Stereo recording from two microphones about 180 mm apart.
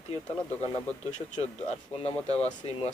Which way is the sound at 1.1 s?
40° left (ahead or behind).